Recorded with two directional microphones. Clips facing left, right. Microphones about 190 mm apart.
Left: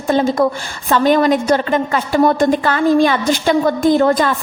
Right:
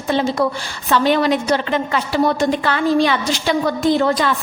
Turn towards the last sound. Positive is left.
turn(degrees=50)  # may be behind; listen again after turning